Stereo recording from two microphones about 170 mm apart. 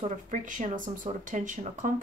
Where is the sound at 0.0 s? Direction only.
50° right (ahead or behind).